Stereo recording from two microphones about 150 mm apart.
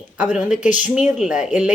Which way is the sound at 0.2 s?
10° right (ahead or behind).